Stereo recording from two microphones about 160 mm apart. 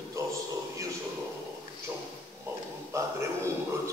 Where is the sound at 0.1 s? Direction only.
20° right (ahead or behind).